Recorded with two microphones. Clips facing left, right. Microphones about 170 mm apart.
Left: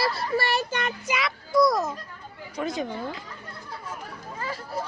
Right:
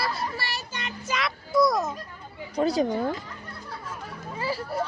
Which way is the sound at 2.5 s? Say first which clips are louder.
Right 6 dB; 35° right (ahead or behind).